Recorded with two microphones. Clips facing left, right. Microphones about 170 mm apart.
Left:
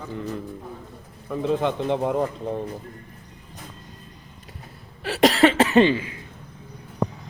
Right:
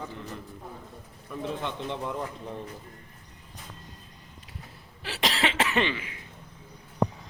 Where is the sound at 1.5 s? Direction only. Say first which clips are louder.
Left 10 dB; 90° left.